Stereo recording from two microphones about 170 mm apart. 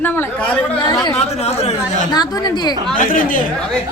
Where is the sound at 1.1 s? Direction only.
40° left (ahead or behind).